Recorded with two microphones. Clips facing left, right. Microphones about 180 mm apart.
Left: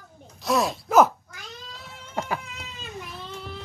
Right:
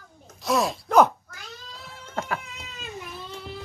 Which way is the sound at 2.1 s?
10° left (ahead or behind).